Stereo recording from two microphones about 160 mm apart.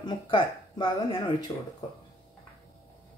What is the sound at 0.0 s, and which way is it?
Speech, 30° left (ahead or behind).